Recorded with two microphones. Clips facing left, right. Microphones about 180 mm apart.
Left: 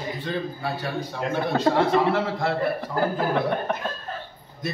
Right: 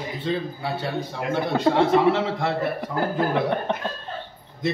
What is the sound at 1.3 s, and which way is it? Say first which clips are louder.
Speech: right 1 dB; 25° right (ahead or behind).